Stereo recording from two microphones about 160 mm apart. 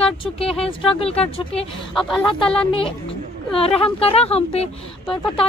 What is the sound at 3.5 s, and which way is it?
A woman's voice, 35° left (ahead or behind).